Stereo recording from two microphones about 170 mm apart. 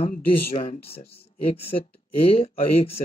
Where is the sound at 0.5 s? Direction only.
35° left (ahead or behind).